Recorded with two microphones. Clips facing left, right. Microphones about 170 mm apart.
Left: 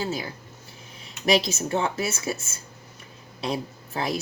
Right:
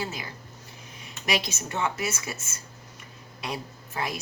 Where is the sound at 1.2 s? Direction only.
35° left (ahead or behind).